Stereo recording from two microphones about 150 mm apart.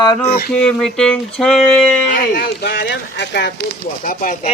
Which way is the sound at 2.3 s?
90° left.